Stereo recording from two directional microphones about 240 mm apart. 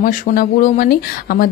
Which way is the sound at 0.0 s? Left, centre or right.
Left.